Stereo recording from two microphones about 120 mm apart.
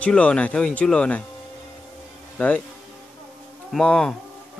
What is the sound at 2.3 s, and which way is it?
Speech, 10° left (ahead or behind).